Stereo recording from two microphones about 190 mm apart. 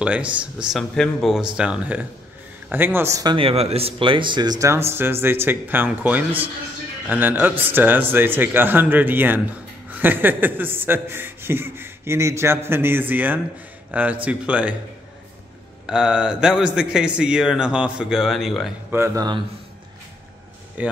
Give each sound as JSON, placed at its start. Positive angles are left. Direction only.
{"t": 0.0, "sound": "a man's voice", "side_deg": -5}
{"t": 15.9, "sound": "a man's voice", "side_deg": -5}
{"t": 18.9, "sound": "speech", "side_deg": -15}
{"t": 20.8, "sound": "speech", "side_deg": -5}